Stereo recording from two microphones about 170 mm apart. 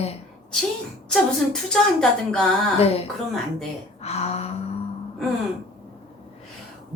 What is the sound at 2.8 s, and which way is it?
Speech, 35° left (ahead or behind).